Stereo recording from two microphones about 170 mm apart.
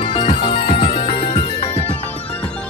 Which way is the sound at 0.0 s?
30° left (ahead or behind).